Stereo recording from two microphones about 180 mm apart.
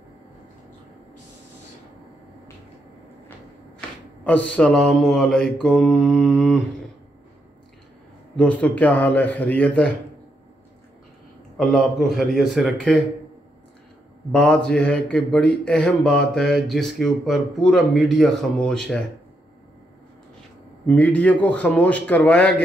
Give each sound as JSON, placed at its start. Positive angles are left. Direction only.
{"t": 4.2, "sound": "mantra", "side_deg": 10}
{"t": 8.4, "sound": "mantra", "side_deg": 10}
{"t": 11.5, "sound": "speech", "side_deg": 0}
{"t": 14.3, "sound": "speech", "side_deg": 5}
{"t": 20.8, "sound": "mantra", "side_deg": 10}